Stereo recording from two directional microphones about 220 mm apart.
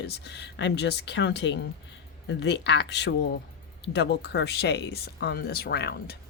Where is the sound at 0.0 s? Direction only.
50° left (ahead or behind).